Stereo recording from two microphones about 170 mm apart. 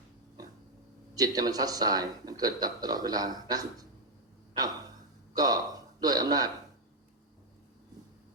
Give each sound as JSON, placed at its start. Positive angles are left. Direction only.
{"t": 1.1, "sound": "speech", "side_deg": -20}
{"t": 4.5, "sound": "gasp", "side_deg": -25}
{"t": 5.3, "sound": "a man's voice", "side_deg": -20}